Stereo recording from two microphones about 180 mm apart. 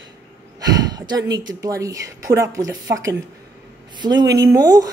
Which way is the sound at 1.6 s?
20° right (ahead or behind).